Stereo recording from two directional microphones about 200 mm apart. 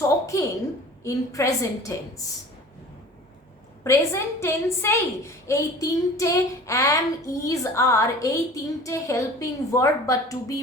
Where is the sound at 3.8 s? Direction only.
15° left (ahead or behind).